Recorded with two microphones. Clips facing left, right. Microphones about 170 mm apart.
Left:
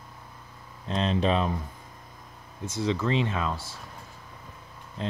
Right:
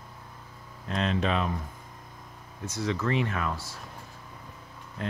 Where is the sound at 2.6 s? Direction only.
25° left (ahead or behind).